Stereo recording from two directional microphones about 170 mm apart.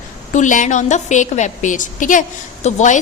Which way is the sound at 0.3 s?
45° left (ahead or behind).